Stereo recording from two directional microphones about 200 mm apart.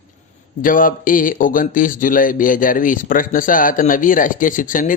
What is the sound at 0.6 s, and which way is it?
Speech, 45° left (ahead or behind).